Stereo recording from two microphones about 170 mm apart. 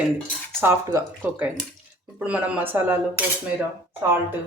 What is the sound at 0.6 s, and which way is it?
Speech, 15° right (ahead or behind).